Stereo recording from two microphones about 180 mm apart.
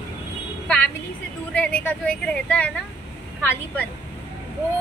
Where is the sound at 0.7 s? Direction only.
10° left (ahead or behind).